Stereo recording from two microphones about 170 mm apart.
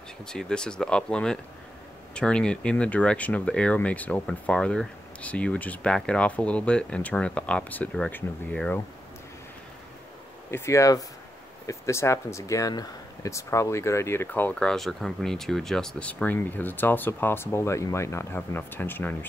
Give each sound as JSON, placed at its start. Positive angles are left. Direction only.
{"t": 0.2, "sound": "speech", "side_deg": 5}
{"t": 10.5, "sound": "speech", "side_deg": 15}